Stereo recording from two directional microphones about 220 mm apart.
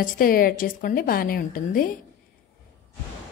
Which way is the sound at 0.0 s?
40° left (ahead or behind).